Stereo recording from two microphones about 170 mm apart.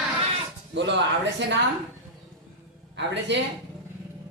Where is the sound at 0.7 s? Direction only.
90° right.